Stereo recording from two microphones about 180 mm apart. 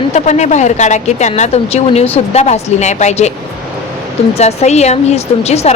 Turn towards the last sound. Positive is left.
turn(degrees=35)  # may be behind; listen again after turning